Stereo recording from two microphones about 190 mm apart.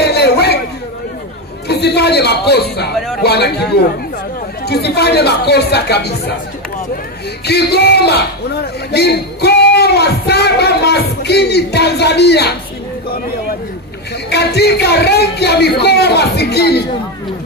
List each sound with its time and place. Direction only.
0.0 s a sound: 60° left (ahead or behind)
1.7 s music: 60° left (ahead or behind)
3.2 s speech: 60° left (ahead or behind)
7.4 s speech: 60° left (ahead or behind)
14.3 s speech: 60° left (ahead or behind)